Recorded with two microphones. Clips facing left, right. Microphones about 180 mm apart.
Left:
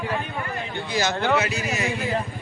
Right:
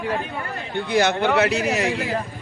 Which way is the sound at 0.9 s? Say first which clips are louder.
Right 4 dB; 60° right (ahead or behind).